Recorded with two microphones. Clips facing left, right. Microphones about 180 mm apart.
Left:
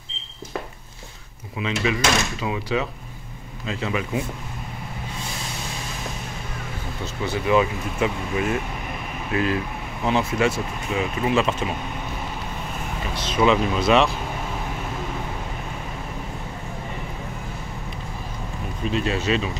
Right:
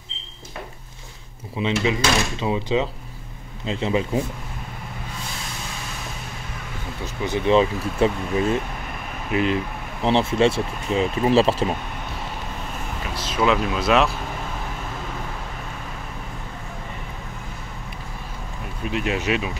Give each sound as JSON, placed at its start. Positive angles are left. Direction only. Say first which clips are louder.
{"t": 1.6, "sound": "speech", "louder": "right 2 dB", "side_deg": -25}
{"t": 7.2, "sound": "speech", "louder": "right 2 dB", "side_deg": -30}
{"t": 13.1, "sound": "speech", "louder": "left 2 dB", "side_deg": 0}
{"t": 18.9, "sound": "speech", "louder": "left 1 dB", "side_deg": -15}